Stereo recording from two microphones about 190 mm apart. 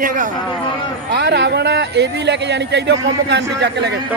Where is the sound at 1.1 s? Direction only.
65° right (ahead or behind).